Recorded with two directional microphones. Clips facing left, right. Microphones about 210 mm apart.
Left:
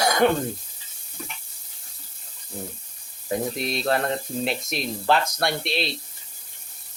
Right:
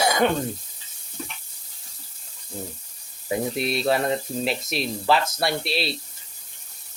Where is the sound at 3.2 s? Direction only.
5° right (ahead or behind).